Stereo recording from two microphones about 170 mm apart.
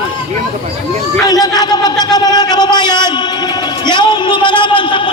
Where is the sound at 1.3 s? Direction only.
20° left (ahead or behind).